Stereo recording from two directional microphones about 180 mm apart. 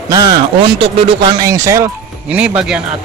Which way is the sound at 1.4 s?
20° right (ahead or behind).